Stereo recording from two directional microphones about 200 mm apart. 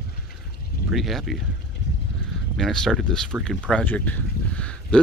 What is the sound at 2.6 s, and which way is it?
Speech, 5° left (ahead or behind).